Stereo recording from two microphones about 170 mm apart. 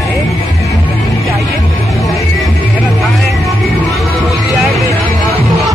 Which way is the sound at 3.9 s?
Centre (ahead or behind).